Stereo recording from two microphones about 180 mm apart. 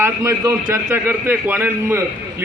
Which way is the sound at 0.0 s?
20° right (ahead or behind).